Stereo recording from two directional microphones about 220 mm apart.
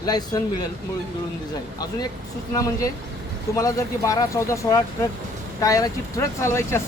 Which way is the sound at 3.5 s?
15° left (ahead or behind).